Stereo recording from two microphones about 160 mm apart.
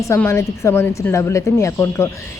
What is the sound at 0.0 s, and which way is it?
A woman's voice, 15° left (ahead or behind).